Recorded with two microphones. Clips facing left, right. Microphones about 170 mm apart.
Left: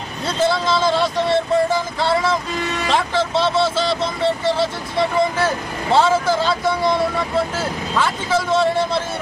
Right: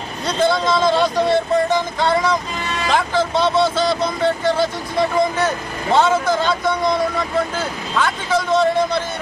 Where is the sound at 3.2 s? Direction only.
30° left (ahead or behind).